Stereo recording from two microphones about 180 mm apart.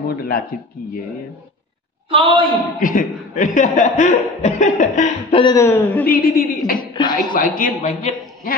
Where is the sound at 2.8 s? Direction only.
50° left (ahead or behind).